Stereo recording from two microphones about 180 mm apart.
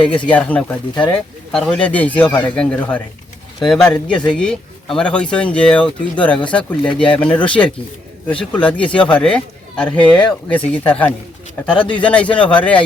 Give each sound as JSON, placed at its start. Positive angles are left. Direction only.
{"t": 0.3, "sound": "speech", "side_deg": 10}